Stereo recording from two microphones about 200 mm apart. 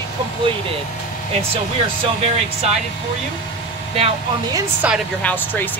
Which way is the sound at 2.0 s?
30° right (ahead or behind).